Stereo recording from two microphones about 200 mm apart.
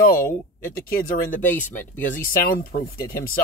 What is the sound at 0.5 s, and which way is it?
Speech, 45° left (ahead or behind).